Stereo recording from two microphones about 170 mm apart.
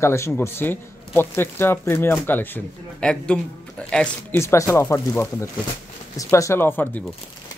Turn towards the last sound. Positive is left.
turn(degrees=10)  # may be behind; listen again after turning